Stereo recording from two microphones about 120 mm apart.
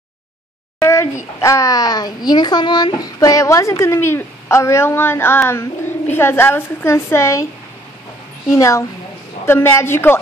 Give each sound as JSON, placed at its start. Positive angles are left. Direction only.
{"t": 0.7, "sound": "a sound", "side_deg": 25}
{"t": 1.4, "sound": "a child's voice", "side_deg": 25}
{"t": 8.5, "sound": "a child's voice", "side_deg": 25}